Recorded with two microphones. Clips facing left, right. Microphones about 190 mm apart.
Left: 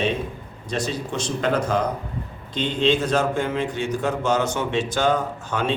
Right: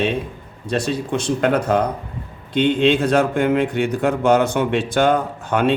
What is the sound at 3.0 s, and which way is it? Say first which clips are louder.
A man's voice: right 5 dB; 60° right (ahead or behind).